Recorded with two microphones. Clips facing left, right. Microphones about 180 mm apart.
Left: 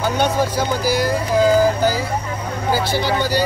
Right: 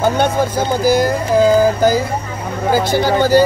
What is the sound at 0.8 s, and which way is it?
Speech, 50° right (ahead or behind).